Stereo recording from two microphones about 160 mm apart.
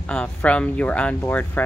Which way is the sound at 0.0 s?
10° left (ahead or behind).